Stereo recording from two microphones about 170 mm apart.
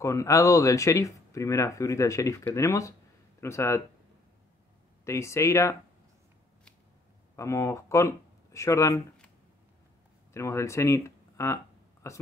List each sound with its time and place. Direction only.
0.0 s speech: 20° left (ahead or behind)
5.0 s speech: 15° left (ahead or behind)
7.3 s speech: 15° left (ahead or behind)
10.3 s speech: 15° left (ahead or behind)